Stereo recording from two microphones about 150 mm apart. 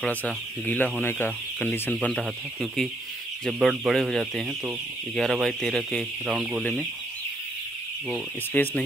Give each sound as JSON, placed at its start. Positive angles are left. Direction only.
{"t": 0.0, "sound": "speech", "side_deg": 10}
{"t": 8.5, "sound": "speech", "side_deg": 10}